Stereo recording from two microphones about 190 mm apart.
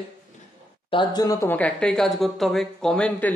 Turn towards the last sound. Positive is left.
turn(degrees=5)  # may be behind; listen again after turning